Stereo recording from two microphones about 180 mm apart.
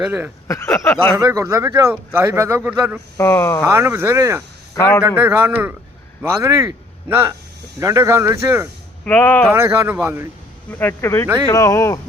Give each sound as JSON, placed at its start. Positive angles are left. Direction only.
{"t": 0.0, "sound": "speech", "side_deg": -5}
{"t": 0.4, "sound": "speech", "side_deg": 15}
{"t": 1.1, "sound": "speech", "side_deg": -15}
{"t": 3.2, "sound": "speech", "side_deg": 15}
{"t": 3.6, "sound": "speech", "side_deg": -10}
{"t": 4.7, "sound": "a man's voice", "side_deg": 15}
{"t": 5.0, "sound": "speech", "side_deg": -10}
{"t": 9.0, "sound": "speech", "side_deg": 10}
{"t": 9.5, "sound": "speech", "side_deg": -15}
{"t": 10.7, "sound": "speech", "side_deg": 10}